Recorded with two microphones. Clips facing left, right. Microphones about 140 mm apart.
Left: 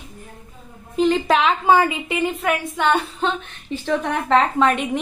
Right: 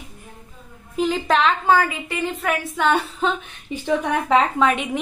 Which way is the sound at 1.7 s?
20° left (ahead or behind).